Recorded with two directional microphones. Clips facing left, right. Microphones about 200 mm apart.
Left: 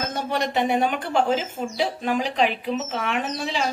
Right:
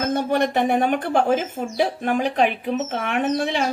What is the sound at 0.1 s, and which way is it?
Speech, 50° right (ahead or behind).